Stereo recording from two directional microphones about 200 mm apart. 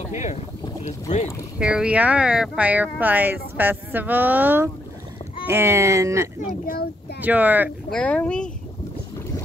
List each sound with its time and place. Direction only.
0.1 s speech: 35° left (ahead or behind)
1.6 s speech: 5° right (ahead or behind)
6.6 s speech: 50° left (ahead or behind)
7.2 s speech: 10° right (ahead or behind)
7.9 s speech: 5° left (ahead or behind)